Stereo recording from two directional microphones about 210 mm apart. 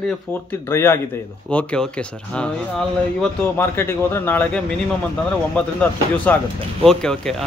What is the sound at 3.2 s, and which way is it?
Speech, 10° left (ahead or behind).